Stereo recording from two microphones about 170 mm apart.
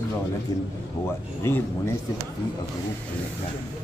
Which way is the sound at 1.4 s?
15° left (ahead or behind).